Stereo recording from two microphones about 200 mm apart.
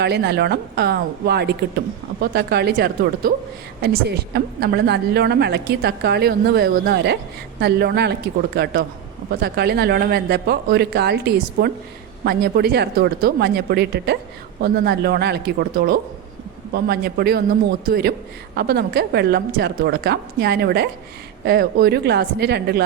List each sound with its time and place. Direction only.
0.0 s a woman's voice: 55° right (ahead or behind)